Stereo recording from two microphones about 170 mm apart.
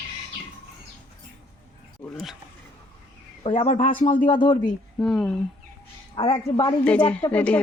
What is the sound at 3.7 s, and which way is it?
Speech, 50° left (ahead or behind).